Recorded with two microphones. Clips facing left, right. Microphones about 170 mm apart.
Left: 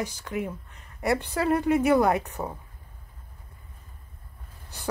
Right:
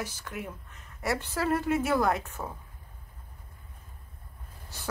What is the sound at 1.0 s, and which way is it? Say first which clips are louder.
Speech: left 5 dB; 60° left (ahead or behind).